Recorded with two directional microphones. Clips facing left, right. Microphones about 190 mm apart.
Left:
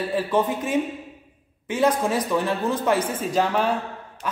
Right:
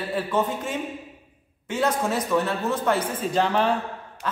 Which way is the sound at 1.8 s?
15° left (ahead or behind).